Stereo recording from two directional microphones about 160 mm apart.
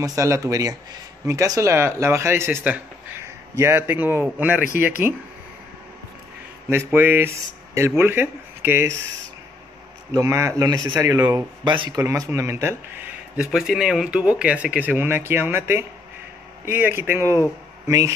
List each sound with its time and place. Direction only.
0.0 s speech: 20° right (ahead or behind)
6.7 s speech: 15° right (ahead or behind)
10.1 s speech: 20° right (ahead or behind)